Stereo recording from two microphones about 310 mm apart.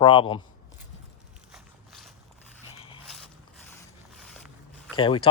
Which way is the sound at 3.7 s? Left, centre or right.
Centre.